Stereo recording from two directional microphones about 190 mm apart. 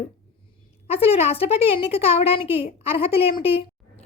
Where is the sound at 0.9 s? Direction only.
30° left (ahead or behind).